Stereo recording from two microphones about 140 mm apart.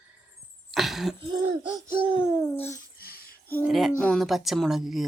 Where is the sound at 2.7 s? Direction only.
90° left.